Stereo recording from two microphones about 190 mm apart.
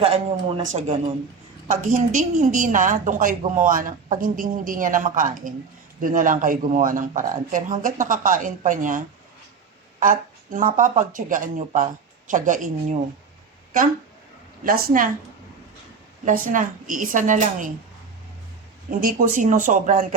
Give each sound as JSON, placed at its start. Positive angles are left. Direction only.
{"t": 0.0, "sound": "speech", "side_deg": -30}
{"t": 1.6, "sound": "a woman's voice", "side_deg": -45}
{"t": 10.0, "sound": "a woman's voice", "side_deg": -45}
{"t": 14.6, "sound": "a woman's voice", "side_deg": -50}
{"t": 16.5, "sound": "a woman's voice", "side_deg": -45}
{"t": 18.9, "sound": "a woman's voice", "side_deg": -45}